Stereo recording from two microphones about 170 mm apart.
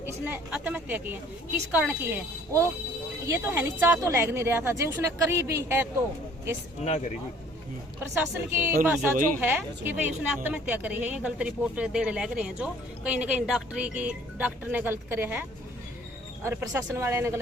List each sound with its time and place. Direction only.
0.0 s a woman's voice: 10° right (ahead or behind)
6.8 s speech: 40° left (ahead or behind)
8.1 s a woman's voice: 10° right (ahead or behind)